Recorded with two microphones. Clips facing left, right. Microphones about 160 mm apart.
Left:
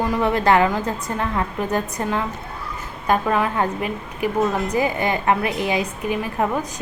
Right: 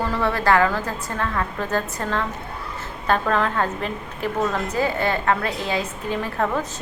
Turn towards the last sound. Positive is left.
turn(degrees=15)  # may be behind; listen again after turning